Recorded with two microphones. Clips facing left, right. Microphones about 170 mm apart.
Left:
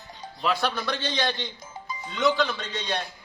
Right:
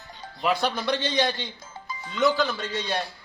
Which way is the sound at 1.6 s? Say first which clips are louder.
Left 1 dB; 20° left (ahead or behind).